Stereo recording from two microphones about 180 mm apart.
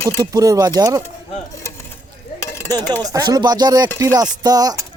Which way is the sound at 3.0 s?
20° right (ahead or behind).